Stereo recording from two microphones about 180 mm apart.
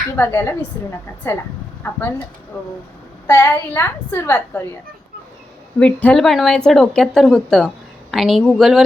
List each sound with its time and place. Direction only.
0.2 s a woman's voice: 15° left (ahead or behind)
3.2 s a woman's voice: 15° left (ahead or behind)
5.8 s speech: 10° left (ahead or behind)